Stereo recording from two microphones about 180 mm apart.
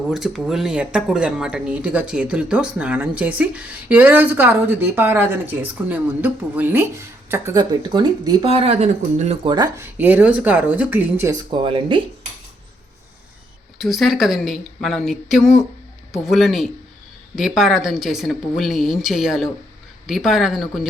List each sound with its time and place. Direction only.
0.1 s speech: centre (ahead or behind); by 8.4 s 25° right (ahead or behind)
8.4 s speech: 35° right (ahead or behind)
9.4 s speech: 25° right (ahead or behind)
9.7 s speech: 10° right (ahead or behind)
11.3 s speech: 25° right (ahead or behind)
13.7 s a woman's voice: centre (ahead or behind)